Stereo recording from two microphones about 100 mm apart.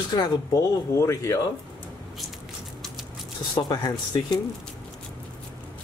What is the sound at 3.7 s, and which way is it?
Speech, 45° left (ahead or behind).